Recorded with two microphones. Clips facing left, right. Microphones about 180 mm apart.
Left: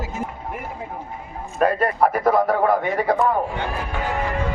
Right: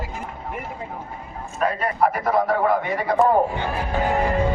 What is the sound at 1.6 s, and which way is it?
Speech, 45° left (ahead or behind).